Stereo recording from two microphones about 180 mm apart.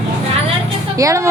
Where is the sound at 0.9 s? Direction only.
15° right (ahead or behind).